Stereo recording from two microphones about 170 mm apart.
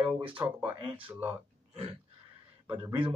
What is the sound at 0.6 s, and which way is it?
Speech, 30° right (ahead or behind).